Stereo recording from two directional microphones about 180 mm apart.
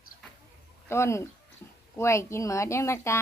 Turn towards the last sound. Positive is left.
turn(degrees=15)  # may be behind; listen again after turning